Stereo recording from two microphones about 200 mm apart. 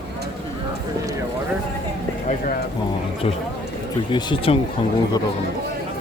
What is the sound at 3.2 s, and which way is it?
A man's voice, 30° left (ahead or behind).